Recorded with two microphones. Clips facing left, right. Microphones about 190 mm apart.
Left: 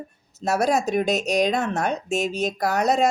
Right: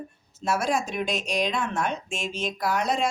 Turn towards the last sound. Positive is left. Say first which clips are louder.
# left 5 dB
turn(degrees=40)  # may be behind; listen again after turning